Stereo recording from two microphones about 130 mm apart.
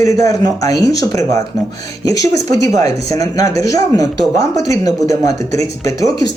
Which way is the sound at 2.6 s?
25° left (ahead or behind).